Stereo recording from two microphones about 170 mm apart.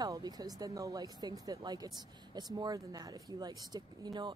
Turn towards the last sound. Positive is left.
turn(degrees=-25)  # may be behind; listen again after turning